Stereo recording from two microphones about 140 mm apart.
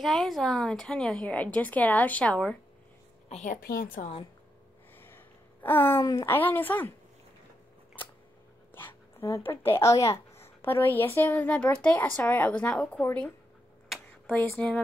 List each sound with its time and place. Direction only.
0.0 s a child's voice: centre (ahead or behind)
3.3 s a woman's voice: 55° left (ahead or behind)
3.6 s a woman's voice: 90° left
4.9 s a sound: 15° left (ahead or behind)
6.0 s a child's voice: 20° left (ahead or behind)
9.4 s a child's voice: 15° left (ahead or behind)
13.8 s a sound: 5° left (ahead or behind)